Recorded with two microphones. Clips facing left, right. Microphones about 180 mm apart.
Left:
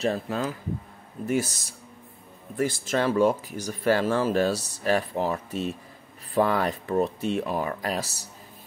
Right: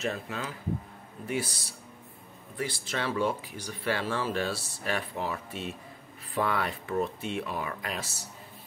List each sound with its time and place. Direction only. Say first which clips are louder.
0.0 s speech: left 7 dB; 35° left (ahead or behind)